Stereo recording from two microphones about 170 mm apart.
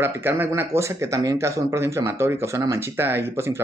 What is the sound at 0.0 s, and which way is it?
Speech, 15° right (ahead or behind).